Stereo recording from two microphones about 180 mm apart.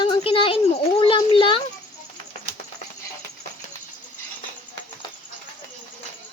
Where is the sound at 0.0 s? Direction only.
30° left (ahead or behind).